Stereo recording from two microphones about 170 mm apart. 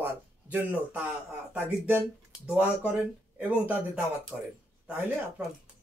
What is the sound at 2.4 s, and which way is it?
Speech, 10° right (ahead or behind).